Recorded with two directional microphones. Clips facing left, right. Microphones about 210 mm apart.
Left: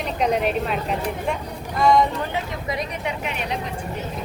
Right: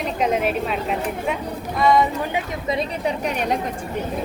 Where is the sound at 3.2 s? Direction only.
45° right (ahead or behind).